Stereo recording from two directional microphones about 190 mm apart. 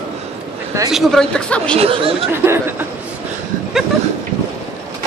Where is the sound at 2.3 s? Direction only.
15° right (ahead or behind).